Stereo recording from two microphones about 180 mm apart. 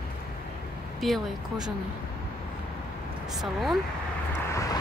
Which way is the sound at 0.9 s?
Centre (ahead or behind).